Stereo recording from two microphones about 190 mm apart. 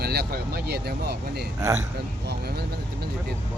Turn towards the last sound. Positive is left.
turn(degrees=-60)  # may be behind; listen again after turning